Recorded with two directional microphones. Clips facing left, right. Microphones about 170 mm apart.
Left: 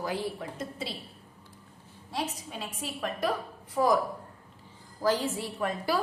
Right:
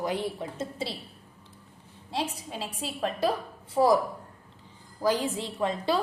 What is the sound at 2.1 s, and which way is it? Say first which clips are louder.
A woman's voice: right 2 dB; 30° right (ahead or behind).